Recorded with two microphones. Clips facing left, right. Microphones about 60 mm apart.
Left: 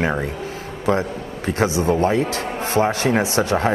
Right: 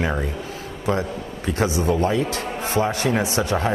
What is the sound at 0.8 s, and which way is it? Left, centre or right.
Speech, left.